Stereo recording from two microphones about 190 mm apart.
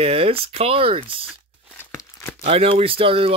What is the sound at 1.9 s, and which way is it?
Tearing, 15° left (ahead or behind).